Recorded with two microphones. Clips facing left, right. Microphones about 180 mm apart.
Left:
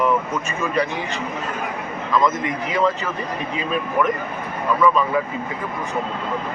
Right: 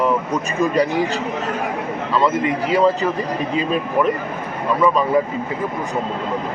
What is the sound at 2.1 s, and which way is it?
Speech, 30° right (ahead or behind).